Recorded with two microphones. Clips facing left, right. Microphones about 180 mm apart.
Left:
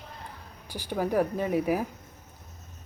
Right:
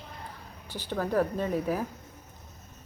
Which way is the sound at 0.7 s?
10° left (ahead or behind).